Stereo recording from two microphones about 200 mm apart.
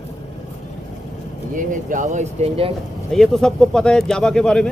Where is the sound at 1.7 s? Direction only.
40° right (ahead or behind).